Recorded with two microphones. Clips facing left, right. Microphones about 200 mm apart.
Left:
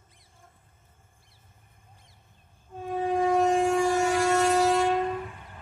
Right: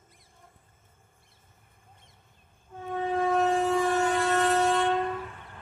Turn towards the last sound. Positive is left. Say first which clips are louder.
# left 2 dB
turn(degrees=10)  # may be behind; listen again after turning